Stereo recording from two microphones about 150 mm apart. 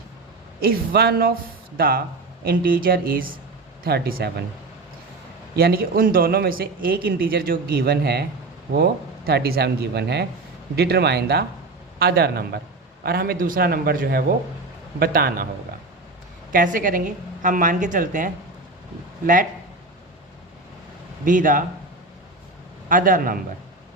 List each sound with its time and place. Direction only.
0.6 s speech: 90° right
2.4 s speech: 85° right
3.8 s speech: 90° right
5.5 s speech: 85° right
16.5 s speech: 65° right (ahead or behind)
21.2 s speech: 65° right (ahead or behind)
22.9 s speech: 65° right (ahead or behind)